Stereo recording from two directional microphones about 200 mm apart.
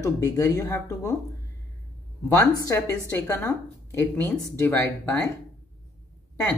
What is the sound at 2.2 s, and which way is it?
Speech, 15° left (ahead or behind).